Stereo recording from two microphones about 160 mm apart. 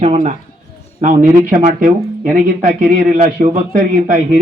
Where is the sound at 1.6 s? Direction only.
50° right (ahead or behind).